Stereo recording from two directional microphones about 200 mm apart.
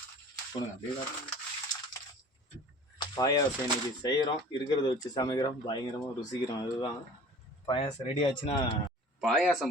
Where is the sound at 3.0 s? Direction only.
20° left (ahead or behind).